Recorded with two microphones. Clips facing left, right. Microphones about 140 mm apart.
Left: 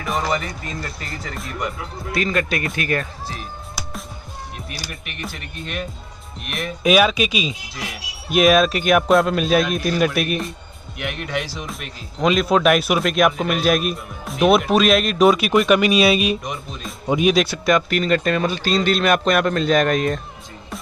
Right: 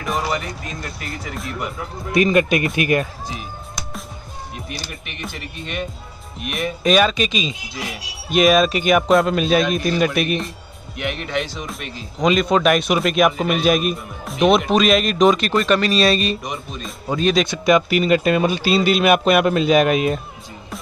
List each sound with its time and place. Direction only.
0.0 s speech: centre (ahead or behind)
2.1 s speech: 20° right (ahead or behind)
3.3 s music: centre (ahead or behind)
4.8 s speech: centre (ahead or behind)
17.0 s speech: 20° left (ahead or behind)
17.3 s speech: 5° left (ahead or behind)